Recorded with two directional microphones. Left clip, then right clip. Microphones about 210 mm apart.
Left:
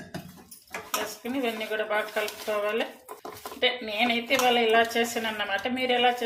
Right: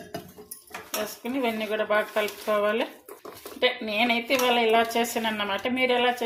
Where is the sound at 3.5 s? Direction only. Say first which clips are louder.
Right 2 dB; 30° right (ahead or behind).